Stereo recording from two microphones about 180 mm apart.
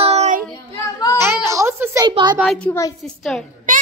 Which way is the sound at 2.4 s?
Centre (ahead or behind).